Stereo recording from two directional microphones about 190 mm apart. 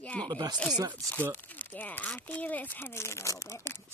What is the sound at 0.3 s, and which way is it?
Speech, 20° right (ahead or behind).